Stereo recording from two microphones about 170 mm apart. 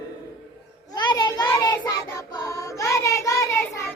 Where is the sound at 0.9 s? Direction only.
25° left (ahead or behind).